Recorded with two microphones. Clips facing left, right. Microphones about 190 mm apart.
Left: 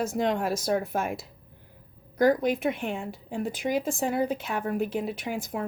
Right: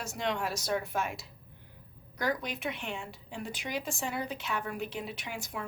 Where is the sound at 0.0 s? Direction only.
50° left (ahead or behind).